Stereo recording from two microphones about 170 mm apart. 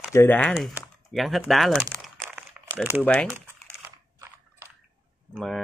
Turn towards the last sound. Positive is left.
turn(degrees=0)  # may be behind; listen again after turning